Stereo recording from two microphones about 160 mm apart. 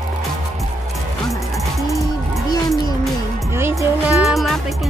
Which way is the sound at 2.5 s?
25° left (ahead or behind).